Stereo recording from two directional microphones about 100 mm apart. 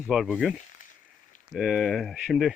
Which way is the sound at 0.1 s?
5° right (ahead or behind).